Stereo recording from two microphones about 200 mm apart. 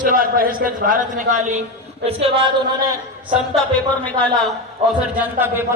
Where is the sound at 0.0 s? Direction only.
45° right (ahead or behind); by 2.3 s 30° right (ahead or behind).